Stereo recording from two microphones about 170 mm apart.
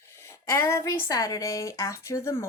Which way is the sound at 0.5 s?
15° left (ahead or behind).